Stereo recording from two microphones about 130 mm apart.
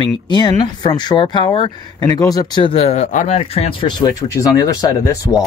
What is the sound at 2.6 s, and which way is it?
Speech, 50° left (ahead or behind).